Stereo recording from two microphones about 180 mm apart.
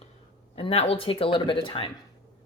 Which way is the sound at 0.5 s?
35° left (ahead or behind).